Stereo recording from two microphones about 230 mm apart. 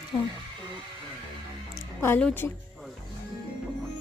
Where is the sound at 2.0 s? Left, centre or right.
Centre.